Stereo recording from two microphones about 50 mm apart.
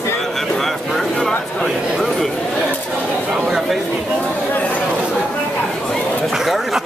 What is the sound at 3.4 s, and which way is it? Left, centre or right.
Chatter, centre.